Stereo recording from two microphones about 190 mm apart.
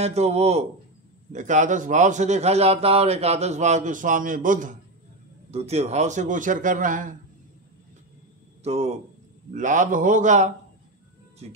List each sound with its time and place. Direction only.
0.0 s a man's voice: 35° right (ahead or behind)
8.6 s a man's voice: 35° right (ahead or behind)